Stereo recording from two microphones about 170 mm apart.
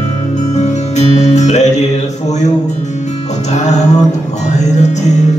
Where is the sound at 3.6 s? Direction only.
40° left (ahead or behind).